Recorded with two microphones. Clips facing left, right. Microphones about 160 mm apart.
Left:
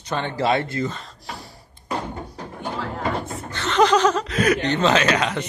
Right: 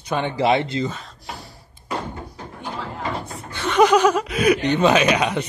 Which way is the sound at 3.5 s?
10° right (ahead or behind).